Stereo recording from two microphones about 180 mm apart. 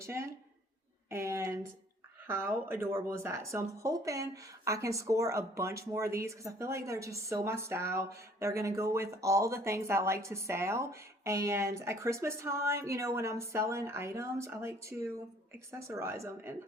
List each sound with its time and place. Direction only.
0.0 s speech: 15° right (ahead or behind)